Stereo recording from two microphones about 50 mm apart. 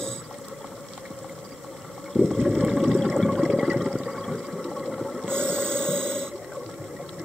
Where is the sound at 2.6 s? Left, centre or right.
Centre.